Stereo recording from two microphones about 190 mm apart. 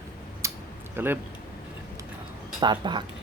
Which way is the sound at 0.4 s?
15° right (ahead or behind).